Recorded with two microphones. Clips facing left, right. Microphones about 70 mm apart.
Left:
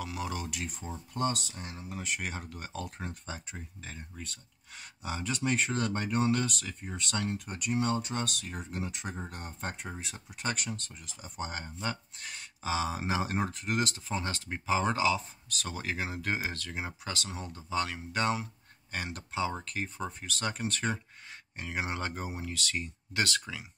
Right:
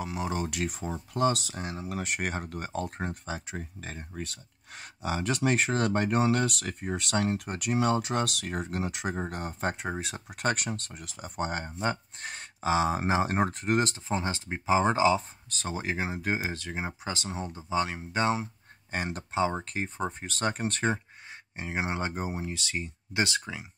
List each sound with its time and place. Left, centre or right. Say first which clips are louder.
0.0 s speech: right 5 dB; right
0.5 s speech: right 6 dB; right
1.1 s speech: right 5 dB; right
2.0 s speech: right 1 dB; right
3.3 s speech: right 6 dB; right
3.8 s speech: right 6 dB; right